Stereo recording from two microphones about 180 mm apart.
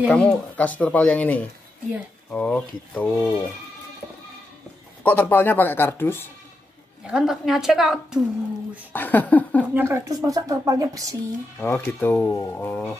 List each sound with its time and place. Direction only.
0.1 s speech: 5° left (ahead or behind)
5.0 s speech: 10° left (ahead or behind)
7.1 s a woman's voice: 5° right (ahead or behind)
8.9 s speech: 10° left (ahead or behind)
9.8 s a woman's voice: 15° right (ahead or behind)
11.6 s speech: 10° left (ahead or behind)